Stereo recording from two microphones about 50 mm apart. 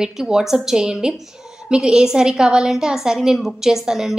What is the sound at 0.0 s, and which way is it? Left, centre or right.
A woman's voice, centre.